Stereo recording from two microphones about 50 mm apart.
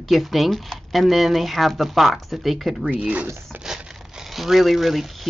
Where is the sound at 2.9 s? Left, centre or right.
Right.